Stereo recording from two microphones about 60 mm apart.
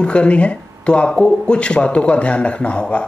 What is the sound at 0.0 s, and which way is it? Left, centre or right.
Speech, centre.